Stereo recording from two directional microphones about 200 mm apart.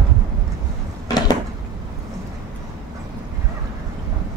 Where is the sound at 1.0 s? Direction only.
20° left (ahead or behind).